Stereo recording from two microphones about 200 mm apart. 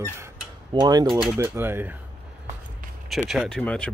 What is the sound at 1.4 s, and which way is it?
Speech, 10° right (ahead or behind).